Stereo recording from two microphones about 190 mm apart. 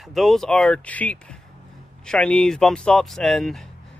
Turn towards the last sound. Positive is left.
turn(degrees=0)  # may be behind; listen again after turning